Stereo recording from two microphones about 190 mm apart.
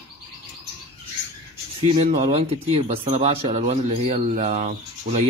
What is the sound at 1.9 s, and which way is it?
Speech, 30° right (ahead or behind).